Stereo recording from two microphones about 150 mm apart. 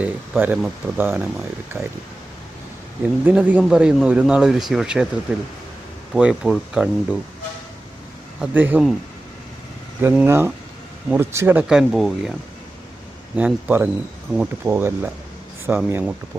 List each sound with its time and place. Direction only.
0.0 s speech: 10° right (ahead or behind)
3.0 s speech: 10° right (ahead or behind)
8.4 s speech: 10° right (ahead or behind)
10.0 s speech: 15° right (ahead or behind)
11.7 s speech: centre (ahead or behind)
13.3 s speech: 10° right (ahead or behind)